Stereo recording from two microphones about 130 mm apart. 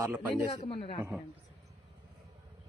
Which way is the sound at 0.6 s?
45° left (ahead or behind).